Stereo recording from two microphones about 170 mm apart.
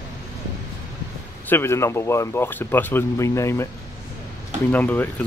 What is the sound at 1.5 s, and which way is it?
Speech, 15° left (ahead or behind).